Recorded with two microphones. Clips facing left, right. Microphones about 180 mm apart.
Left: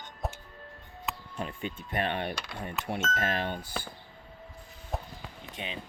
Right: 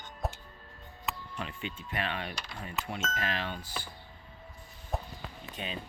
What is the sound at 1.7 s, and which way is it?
Speech, 55° left (ahead or behind).